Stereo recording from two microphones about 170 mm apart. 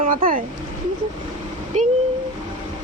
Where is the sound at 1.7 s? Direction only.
45° right (ahead or behind).